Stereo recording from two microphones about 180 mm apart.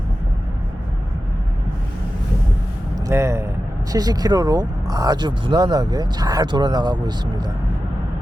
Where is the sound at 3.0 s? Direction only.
15° right (ahead or behind).